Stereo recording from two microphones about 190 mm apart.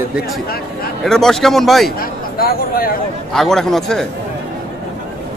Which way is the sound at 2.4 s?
50° left (ahead or behind).